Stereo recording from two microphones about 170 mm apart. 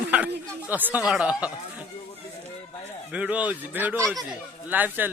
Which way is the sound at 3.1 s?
5° right (ahead or behind).